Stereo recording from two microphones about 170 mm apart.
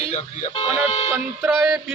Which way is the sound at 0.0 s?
35° left (ahead or behind).